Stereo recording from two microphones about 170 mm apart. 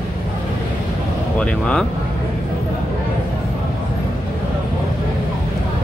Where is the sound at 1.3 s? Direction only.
5° left (ahead or behind).